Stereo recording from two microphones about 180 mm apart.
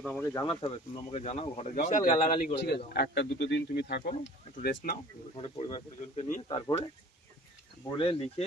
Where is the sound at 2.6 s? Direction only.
65° left (ahead or behind).